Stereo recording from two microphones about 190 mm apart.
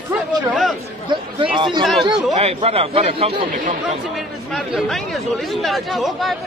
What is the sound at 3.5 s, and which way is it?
Speech, 45° right (ahead or behind).